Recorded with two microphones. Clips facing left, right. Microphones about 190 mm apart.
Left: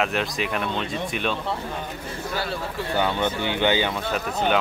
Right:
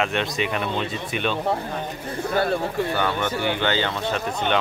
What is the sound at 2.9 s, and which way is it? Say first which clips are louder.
Speech: left 1 dB; 15° left (ahead or behind).